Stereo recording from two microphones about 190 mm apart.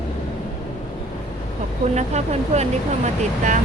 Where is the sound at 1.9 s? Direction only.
35° right (ahead or behind).